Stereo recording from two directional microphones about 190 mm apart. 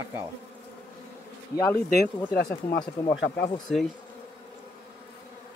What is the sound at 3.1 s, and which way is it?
Speech, 65° left (ahead or behind).